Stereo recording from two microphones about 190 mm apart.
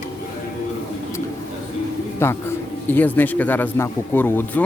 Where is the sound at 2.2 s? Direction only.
10° left (ahead or behind).